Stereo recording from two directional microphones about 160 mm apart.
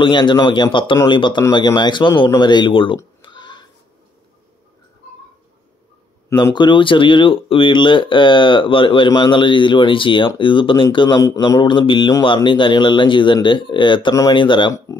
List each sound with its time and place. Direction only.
0.0 s speech: 30° left (ahead or behind)
3.2 s oink: 30° left (ahead or behind)
6.3 s speech: 30° left (ahead or behind)
14.9 s speech: 20° left (ahead or behind)